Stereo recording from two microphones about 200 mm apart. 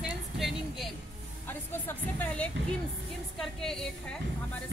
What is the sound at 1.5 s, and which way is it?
A woman's voice, 10° left (ahead or behind).